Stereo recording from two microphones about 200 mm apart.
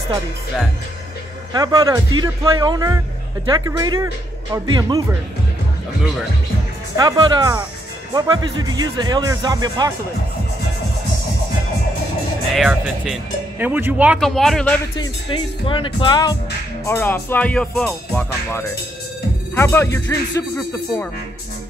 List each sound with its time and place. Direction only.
1.5 s speech: 20° right (ahead or behind)
7.0 s speech: 20° right (ahead or behind)
12.5 s speech: centre (ahead or behind)
15.0 s speech: 25° left (ahead or behind)
16.8 s music: 10° left (ahead or behind)